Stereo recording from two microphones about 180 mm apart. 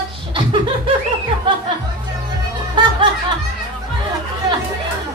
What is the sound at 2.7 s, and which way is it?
Snicker, 25° right (ahead or behind).